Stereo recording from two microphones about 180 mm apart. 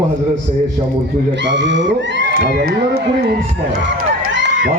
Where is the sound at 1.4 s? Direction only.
80° right.